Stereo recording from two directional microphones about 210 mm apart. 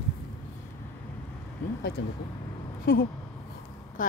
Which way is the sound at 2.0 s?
60° left (ahead or behind).